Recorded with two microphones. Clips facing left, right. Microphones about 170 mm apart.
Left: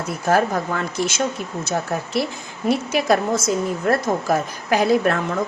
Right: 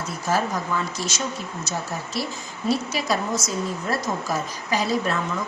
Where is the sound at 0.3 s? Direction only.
55° left (ahead or behind).